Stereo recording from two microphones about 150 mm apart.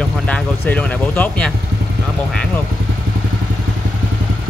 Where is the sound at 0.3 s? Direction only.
5° left (ahead or behind).